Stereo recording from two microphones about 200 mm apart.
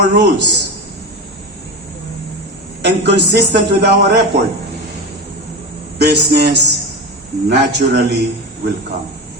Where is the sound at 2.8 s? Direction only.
55° right (ahead or behind).